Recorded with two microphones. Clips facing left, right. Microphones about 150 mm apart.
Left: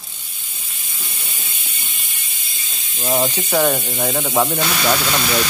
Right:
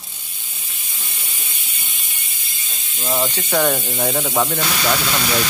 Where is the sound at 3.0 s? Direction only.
25° left (ahead or behind).